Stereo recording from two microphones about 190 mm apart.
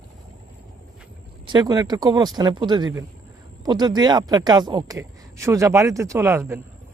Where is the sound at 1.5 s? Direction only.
20° right (ahead or behind).